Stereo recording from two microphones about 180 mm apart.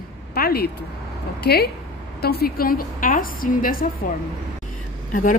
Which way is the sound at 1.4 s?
60° left (ahead or behind).